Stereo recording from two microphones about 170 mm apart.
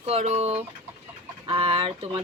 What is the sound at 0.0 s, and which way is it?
Speech, 35° right (ahead or behind).